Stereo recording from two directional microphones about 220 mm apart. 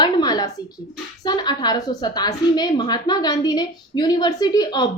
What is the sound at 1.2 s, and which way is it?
A woman's voice, 20° left (ahead or behind).